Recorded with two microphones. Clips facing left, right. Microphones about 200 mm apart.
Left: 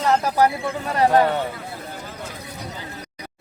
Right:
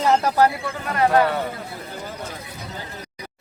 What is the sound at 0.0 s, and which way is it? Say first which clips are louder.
Speech: right 1 dB; centre (ahead or behind).